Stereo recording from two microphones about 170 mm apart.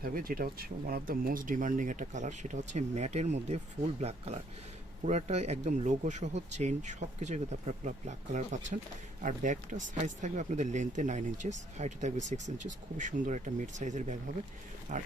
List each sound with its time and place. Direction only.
0.0 s speech: 55° right (ahead or behind); by 3.6 s 40° right (ahead or behind)
5.0 s speech: 40° right (ahead or behind)